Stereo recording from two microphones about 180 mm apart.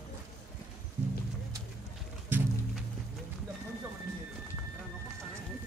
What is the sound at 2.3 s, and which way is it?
Music, 10° right (ahead or behind).